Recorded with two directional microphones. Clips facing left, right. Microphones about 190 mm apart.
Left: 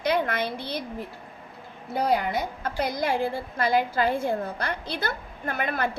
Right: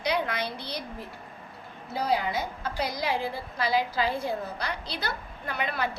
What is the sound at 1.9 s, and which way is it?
A woman's voice, 55° left (ahead or behind).